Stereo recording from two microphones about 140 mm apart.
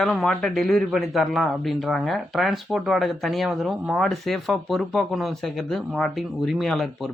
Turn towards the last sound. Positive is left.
turn(degrees=0)  # may be behind; listen again after turning